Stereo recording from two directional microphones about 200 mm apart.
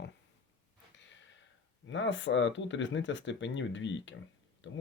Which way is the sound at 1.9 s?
65° left (ahead or behind).